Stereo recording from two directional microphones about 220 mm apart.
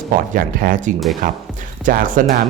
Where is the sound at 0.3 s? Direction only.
40° right (ahead or behind).